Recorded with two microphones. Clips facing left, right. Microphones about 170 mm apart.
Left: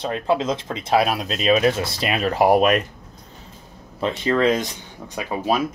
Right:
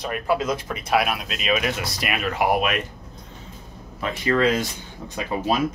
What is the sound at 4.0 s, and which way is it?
Speech, 25° left (ahead or behind).